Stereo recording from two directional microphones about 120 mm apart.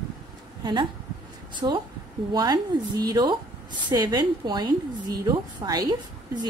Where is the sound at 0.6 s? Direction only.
40° right (ahead or behind).